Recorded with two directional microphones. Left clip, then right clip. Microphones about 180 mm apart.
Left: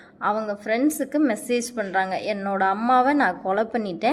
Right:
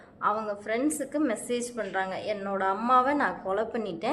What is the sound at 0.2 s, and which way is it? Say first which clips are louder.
A woman's voice: left 4 dB; 25° left (ahead or behind).